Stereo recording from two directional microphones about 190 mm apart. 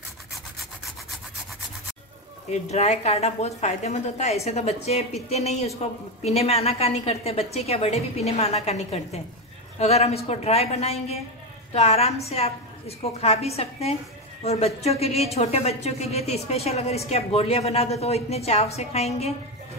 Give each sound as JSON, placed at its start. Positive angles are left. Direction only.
{"t": 2.7, "sound": "speech", "side_deg": 35}